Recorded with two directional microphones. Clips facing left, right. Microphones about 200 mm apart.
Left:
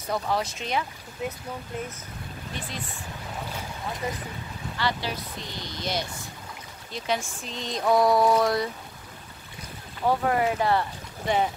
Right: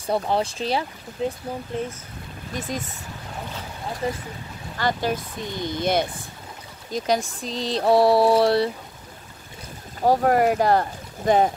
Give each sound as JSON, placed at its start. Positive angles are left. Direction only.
{"t": 0.0, "sound": "speech", "side_deg": -30}
{"t": 2.5, "sound": "speech", "side_deg": -45}
{"t": 4.0, "sound": "speech", "side_deg": -30}
{"t": 4.7, "sound": "speech", "side_deg": -45}
{"t": 6.9, "sound": "speech", "side_deg": -40}
{"t": 10.0, "sound": "speech", "side_deg": -40}